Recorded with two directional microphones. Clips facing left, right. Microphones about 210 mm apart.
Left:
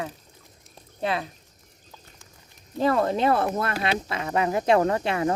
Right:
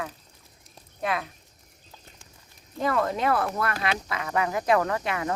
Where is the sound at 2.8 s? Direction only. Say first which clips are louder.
Left 4 dB; 30° left (ahead or behind).